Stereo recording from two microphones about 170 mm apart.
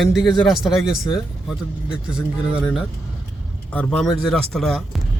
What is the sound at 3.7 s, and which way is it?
Speech, 10° left (ahead or behind).